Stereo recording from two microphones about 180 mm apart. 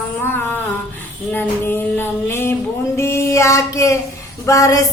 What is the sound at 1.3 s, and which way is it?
Music, 10° left (ahead or behind).